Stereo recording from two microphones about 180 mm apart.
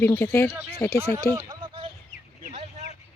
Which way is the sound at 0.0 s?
10° left (ahead or behind).